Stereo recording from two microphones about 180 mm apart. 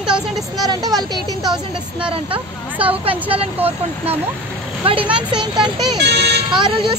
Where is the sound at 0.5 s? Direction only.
20° right (ahead or behind).